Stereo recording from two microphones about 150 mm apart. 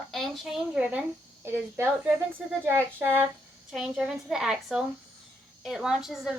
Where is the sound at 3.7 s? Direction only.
5° right (ahead or behind).